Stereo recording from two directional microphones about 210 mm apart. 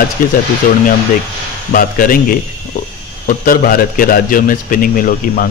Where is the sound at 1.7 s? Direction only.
40° left (ahead or behind).